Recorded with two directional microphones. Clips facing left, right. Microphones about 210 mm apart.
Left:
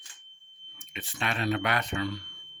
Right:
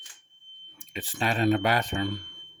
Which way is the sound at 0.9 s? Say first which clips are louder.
Right 5 dB; 35° right (ahead or behind).